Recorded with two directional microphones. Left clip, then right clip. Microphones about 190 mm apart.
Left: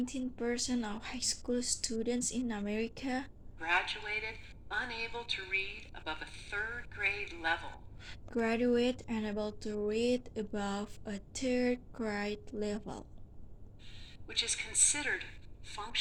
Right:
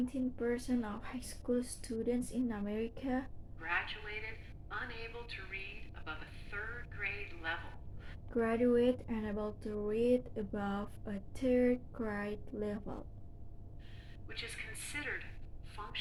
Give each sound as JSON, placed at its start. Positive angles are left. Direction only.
{"t": 0.0, "sound": "speech", "side_deg": 40}
{"t": 3.6, "sound": "a woman's voice", "side_deg": 75}
{"t": 8.3, "sound": "speech", "side_deg": 35}
{"t": 14.3, "sound": "a woman's voice", "side_deg": 70}